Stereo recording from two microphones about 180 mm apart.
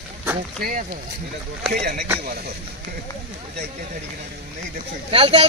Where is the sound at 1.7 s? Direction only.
60° right (ahead or behind).